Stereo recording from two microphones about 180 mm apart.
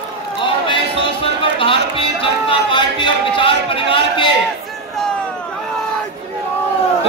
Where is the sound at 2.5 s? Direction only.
25° left (ahead or behind).